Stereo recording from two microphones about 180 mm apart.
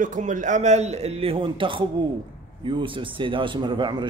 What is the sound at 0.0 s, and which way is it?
Speech, 45° right (ahead or behind).